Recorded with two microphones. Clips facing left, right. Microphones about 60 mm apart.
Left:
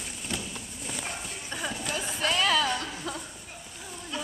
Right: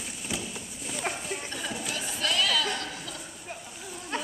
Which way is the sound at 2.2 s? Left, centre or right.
Left.